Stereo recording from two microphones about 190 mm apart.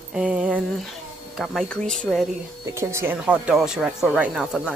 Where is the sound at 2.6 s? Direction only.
15° right (ahead or behind).